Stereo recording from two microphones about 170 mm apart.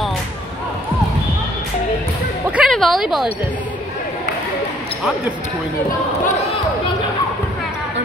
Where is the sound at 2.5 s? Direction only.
Centre (ahead or behind).